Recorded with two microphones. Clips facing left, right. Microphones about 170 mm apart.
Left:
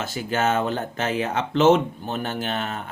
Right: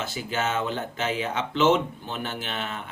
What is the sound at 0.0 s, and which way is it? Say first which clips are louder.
Speech: left 5 dB; 45° left (ahead or behind).